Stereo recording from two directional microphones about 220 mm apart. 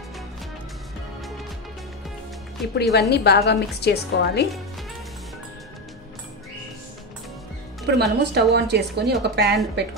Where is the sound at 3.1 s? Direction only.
50° left (ahead or behind).